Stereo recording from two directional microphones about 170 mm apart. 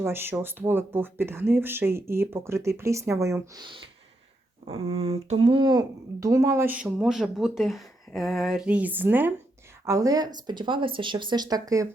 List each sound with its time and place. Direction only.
0.0 s speech: 15° right (ahead or behind)
4.6 s speech: 35° right (ahead or behind); by 11.9 s 20° right (ahead or behind)